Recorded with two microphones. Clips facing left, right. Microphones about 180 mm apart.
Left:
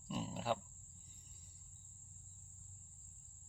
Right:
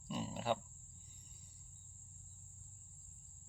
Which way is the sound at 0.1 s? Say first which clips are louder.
Right 1 dB; centre (ahead or behind).